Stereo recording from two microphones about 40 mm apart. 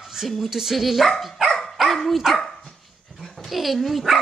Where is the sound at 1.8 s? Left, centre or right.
Centre.